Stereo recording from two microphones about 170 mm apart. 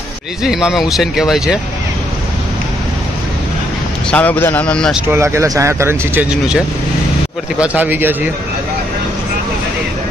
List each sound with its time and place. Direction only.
0.4 s speech: 5° right (ahead or behind)
4.1 s speech: 10° left (ahead or behind)
5.1 s speech: 15° right (ahead or behind)